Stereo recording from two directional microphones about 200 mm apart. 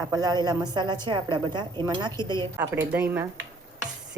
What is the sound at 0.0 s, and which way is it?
A woman's voice, 20° right (ahead or behind).